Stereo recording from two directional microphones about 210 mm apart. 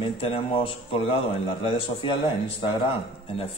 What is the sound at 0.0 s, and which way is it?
Speech, 25° left (ahead or behind).